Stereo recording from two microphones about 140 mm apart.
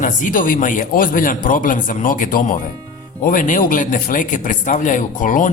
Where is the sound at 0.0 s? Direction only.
70° left (ahead or behind).